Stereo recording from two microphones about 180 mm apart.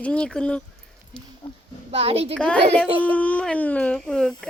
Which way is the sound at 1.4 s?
25° left (ahead or behind).